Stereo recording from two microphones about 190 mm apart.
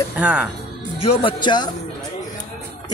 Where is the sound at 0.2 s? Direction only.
5° right (ahead or behind).